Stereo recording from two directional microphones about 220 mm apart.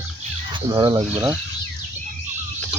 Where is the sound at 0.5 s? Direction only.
20° right (ahead or behind).